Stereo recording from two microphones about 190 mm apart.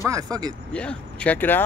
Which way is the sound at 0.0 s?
20° right (ahead or behind).